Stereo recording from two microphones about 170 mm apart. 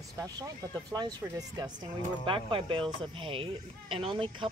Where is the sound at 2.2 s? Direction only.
30° right (ahead or behind).